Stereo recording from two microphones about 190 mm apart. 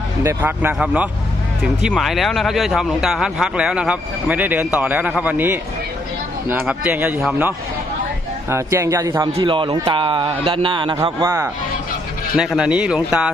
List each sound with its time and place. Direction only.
0.2 s a man's voice: 10° right (ahead or behind)